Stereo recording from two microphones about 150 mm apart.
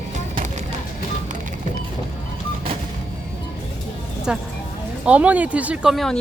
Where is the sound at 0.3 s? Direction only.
55° right (ahead or behind).